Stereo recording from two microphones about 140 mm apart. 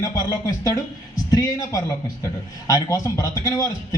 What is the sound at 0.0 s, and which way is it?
A man's voice, 25° left (ahead or behind).